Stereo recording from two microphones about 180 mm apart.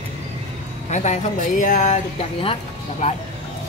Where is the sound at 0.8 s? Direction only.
40° left (ahead or behind).